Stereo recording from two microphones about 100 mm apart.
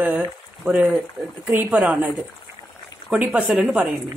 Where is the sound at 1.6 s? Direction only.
5° right (ahead or behind).